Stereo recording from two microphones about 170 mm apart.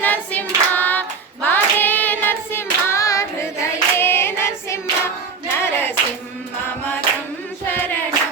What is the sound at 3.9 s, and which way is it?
Singing, 15° left (ahead or behind).